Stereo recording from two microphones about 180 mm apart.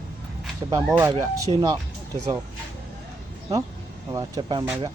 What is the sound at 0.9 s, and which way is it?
Speech, 10° right (ahead or behind).